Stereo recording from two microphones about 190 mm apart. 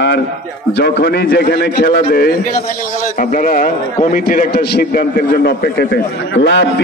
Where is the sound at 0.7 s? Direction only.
60° left (ahead or behind).